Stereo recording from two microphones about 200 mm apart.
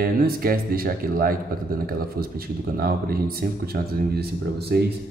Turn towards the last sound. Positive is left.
turn(degrees=-55)  # may be behind; listen again after turning